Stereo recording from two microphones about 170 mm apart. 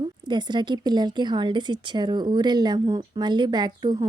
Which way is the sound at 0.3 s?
25° right (ahead or behind).